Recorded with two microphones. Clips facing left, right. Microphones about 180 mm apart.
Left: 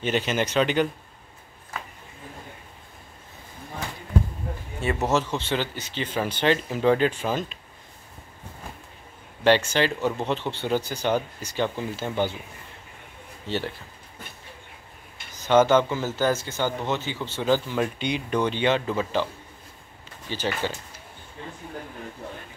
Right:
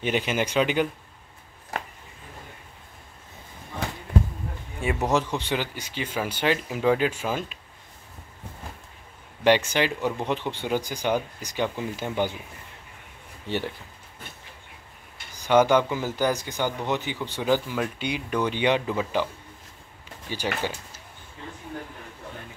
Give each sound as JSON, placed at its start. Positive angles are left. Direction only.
{"t": 0.0, "sound": "speech", "side_deg": -10}
{"t": 4.7, "sound": "speech", "side_deg": -15}
{"t": 9.7, "sound": "speech", "side_deg": -15}
{"t": 13.5, "sound": "speech", "side_deg": -15}
{"t": 15.4, "sound": "speech", "side_deg": -15}
{"t": 20.2, "sound": "speech", "side_deg": -10}